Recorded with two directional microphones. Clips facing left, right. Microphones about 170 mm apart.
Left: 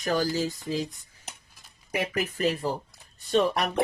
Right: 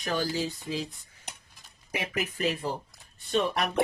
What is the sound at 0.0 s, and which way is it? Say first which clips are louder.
Speech: left 3 dB; 40° left (ahead or behind).